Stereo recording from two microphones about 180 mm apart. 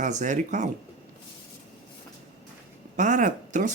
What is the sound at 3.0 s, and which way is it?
Speech, 45° right (ahead or behind).